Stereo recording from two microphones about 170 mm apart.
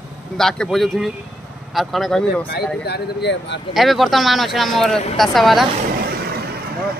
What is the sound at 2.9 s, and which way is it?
Speech, 85° left.